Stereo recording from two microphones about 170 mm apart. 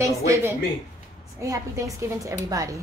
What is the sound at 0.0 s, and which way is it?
A woman's voice, 20° right (ahead or behind).